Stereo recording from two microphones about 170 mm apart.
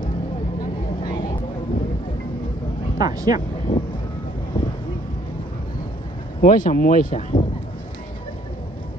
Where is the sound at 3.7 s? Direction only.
30° left (ahead or behind).